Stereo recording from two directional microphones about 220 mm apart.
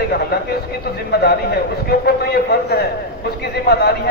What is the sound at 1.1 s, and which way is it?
A man's voice, 45° left (ahead or behind).